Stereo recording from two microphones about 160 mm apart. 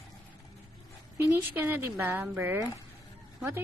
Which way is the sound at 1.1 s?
15° right (ahead or behind).